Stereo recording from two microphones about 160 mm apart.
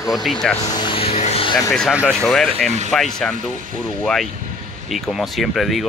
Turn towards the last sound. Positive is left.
turn(degrees=0)  # may be behind; listen again after turning